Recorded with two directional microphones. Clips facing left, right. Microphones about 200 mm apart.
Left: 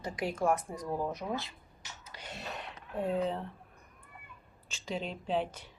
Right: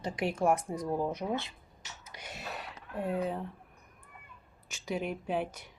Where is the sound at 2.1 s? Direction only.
10° right (ahead or behind).